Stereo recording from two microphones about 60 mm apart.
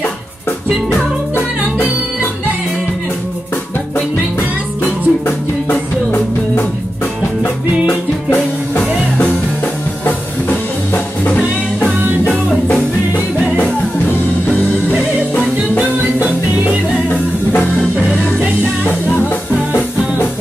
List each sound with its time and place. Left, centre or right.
0.9 s music: left
4.8 s music: left
11.2 s music: left
18.9 s music: left